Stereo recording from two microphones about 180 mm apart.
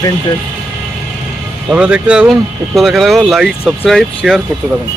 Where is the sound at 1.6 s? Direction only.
5° right (ahead or behind).